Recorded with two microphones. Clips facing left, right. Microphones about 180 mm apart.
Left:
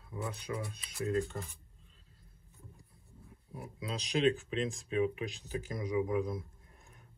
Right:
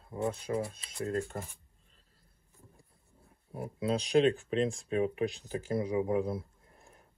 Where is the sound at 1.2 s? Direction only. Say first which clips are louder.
Right 2 dB; 55° right (ahead or behind).